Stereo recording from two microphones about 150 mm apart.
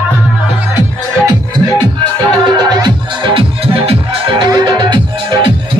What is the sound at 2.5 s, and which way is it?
Music, 30° right (ahead or behind).